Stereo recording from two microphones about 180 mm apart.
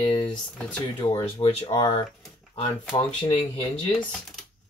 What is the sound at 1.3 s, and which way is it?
Speech, 35° left (ahead or behind).